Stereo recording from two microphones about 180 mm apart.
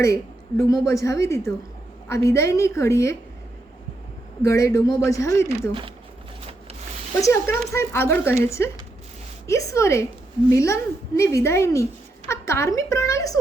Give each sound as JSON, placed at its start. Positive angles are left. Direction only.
{"t": 0.0, "sound": "a woman's voice", "side_deg": 15}
{"t": 4.4, "sound": "a woman's voice", "side_deg": 15}
{"t": 7.2, "sound": "a woman's voice", "side_deg": 15}